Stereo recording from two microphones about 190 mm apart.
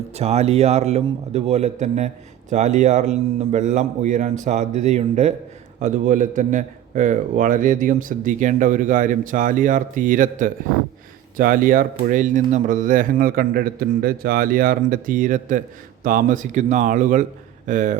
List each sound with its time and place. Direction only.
0.1 s a man's voice: 35° right (ahead or behind)